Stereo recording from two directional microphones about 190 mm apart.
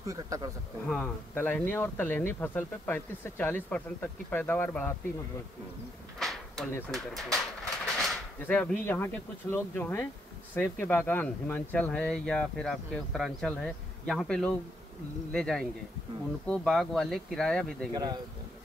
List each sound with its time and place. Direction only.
0.0 s speech: 15° right (ahead or behind)
0.8 s speech: 5° left (ahead or behind)
6.1 s a sound: centre (ahead or behind)
6.9 s speech: 5° left (ahead or behind)
17.9 s speech: 20° right (ahead or behind)